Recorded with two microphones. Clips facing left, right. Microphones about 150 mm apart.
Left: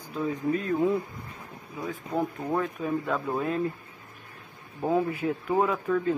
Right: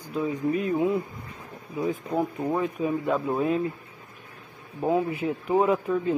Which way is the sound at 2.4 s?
10° right (ahead or behind).